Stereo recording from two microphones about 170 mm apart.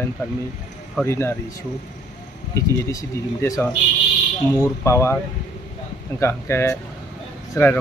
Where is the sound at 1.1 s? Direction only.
15° left (ahead or behind).